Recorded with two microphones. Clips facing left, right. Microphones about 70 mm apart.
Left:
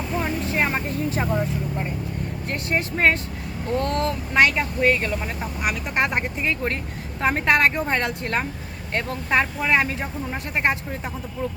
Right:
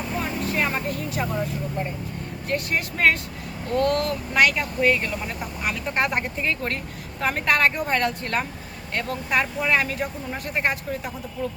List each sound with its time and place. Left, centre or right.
0.2 s vehicle: left
2.5 s speech: left